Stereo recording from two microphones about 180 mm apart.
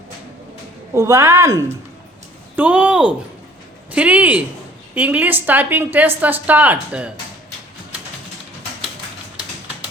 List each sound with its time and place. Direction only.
0.9 s a woman's voice: 20° right (ahead or behind)